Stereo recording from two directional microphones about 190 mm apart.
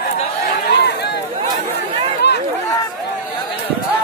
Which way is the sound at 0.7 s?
60° left (ahead or behind).